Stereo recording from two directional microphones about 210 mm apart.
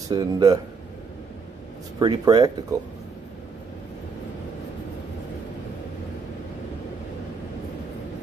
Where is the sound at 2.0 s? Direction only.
20° right (ahead or behind).